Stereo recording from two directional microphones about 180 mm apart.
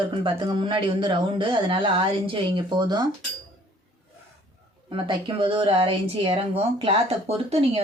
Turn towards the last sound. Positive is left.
turn(degrees=-35)  # may be behind; listen again after turning